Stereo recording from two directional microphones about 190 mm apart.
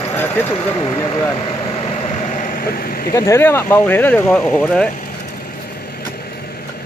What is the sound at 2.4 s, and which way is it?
Vehicle, 50° left (ahead or behind).